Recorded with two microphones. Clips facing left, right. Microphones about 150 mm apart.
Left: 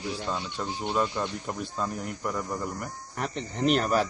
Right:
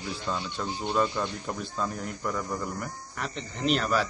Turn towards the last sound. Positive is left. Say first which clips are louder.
# left 2 dB
turn(degrees=45)  # may be behind; listen again after turning